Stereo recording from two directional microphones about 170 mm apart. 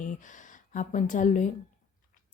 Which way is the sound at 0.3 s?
50° left (ahead or behind).